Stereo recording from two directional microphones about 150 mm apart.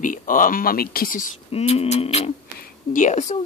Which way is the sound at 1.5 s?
45° left (ahead or behind).